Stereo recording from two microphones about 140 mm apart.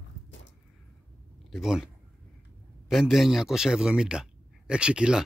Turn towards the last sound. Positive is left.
turn(degrees=-5)  # may be behind; listen again after turning